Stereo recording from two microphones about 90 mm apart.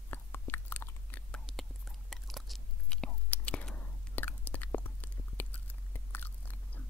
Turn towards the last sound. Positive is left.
turn(degrees=20)  # may be behind; listen again after turning